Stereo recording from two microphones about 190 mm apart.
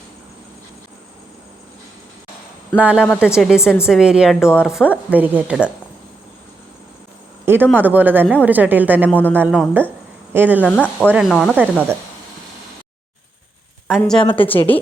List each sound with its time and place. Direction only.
2.7 s a woman's voice: 5° right (ahead or behind)
7.4 s a sound: 10° right (ahead or behind)
7.8 s a woman's voice: 10° right (ahead or behind)
9.0 s speech: 10° left (ahead or behind)
9.3 s a woman's voice: 10° right (ahead or behind)
10.6 s a woman's voice: 5° left (ahead or behind)
11.5 s a woman's voice: 10° right (ahead or behind)
14.0 s a woman's voice: 5° left (ahead or behind)
14.4 s speech: 30° left (ahead or behind)